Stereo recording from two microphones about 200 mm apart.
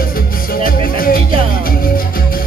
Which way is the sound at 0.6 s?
45° left (ahead or behind).